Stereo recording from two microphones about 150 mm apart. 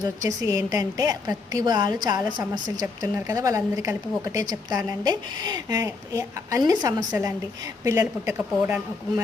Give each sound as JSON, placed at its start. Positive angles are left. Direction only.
{"t": 0.0, "sound": "a woman's voice", "side_deg": -25}
{"t": 8.3, "sound": "speech", "side_deg": -10}